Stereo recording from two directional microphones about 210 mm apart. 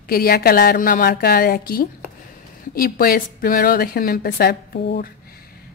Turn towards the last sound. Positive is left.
turn(degrees=45)  # may be behind; listen again after turning